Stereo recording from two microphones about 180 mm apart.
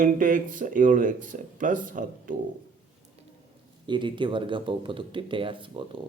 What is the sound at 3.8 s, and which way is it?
Speech, 25° right (ahead or behind).